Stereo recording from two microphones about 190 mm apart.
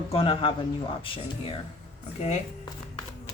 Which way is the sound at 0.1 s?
30° left (ahead or behind).